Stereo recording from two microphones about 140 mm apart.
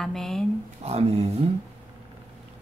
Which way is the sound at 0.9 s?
45° right (ahead or behind).